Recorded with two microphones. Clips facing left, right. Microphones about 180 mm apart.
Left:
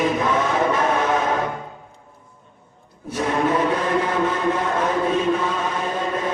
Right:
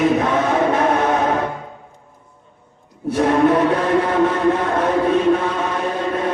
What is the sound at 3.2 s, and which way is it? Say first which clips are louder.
Chant: right 6 dB; 55° right (ahead or behind).